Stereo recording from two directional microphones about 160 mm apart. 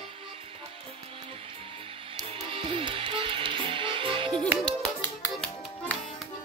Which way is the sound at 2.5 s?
35° right (ahead or behind).